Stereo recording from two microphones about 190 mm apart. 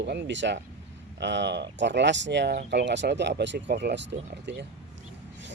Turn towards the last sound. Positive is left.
turn(degrees=-65)  # may be behind; listen again after turning